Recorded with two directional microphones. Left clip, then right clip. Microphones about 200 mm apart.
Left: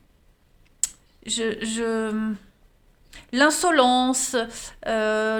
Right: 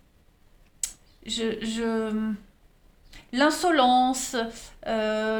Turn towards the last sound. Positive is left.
turn(degrees=45)  # may be behind; listen again after turning